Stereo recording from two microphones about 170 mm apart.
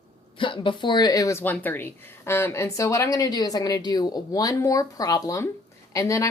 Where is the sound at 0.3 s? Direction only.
30° left (ahead or behind).